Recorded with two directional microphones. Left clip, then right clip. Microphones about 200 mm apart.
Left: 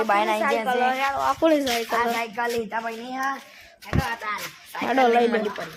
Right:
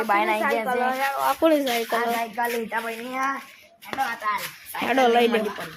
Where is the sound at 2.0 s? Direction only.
55° left (ahead or behind).